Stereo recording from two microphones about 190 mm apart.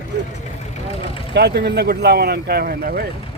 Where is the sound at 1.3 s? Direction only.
60° right (ahead or behind).